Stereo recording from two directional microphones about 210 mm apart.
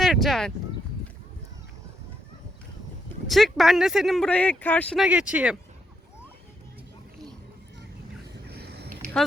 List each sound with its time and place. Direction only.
0.0 s speech: centre (ahead or behind)
3.2 s speech: centre (ahead or behind)
5.0 s speech: 5° right (ahead or behind)
8.4 s a sound: 50° right (ahead or behind)